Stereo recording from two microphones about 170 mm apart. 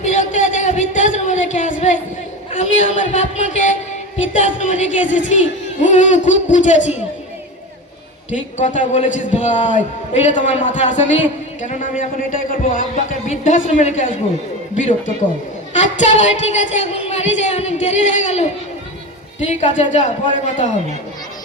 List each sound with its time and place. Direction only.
0.0 s a sound: 45° left (ahead or behind)
2.9 s a man's voice: 45° left (ahead or behind)
8.3 s a man's voice: 45° left (ahead or behind)